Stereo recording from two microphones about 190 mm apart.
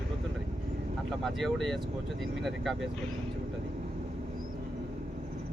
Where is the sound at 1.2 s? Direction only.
Centre (ahead or behind).